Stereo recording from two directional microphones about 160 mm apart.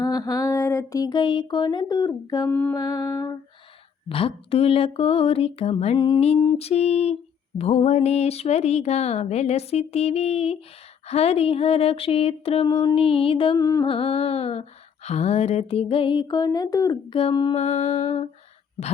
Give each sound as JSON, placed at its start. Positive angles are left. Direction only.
{"t": 0.0, "sound": "a sound", "side_deg": 25}
{"t": 2.5, "sound": "mantra", "side_deg": 15}
{"t": 2.7, "sound": "music", "side_deg": 25}
{"t": 4.1, "sound": "humming", "side_deg": 35}
{"t": 13.6, "sound": "music", "side_deg": 20}
{"t": 13.8, "sound": "humming", "side_deg": 35}
{"t": 17.1, "sound": "humming", "side_deg": 35}
{"t": 17.5, "sound": "humming", "side_deg": 40}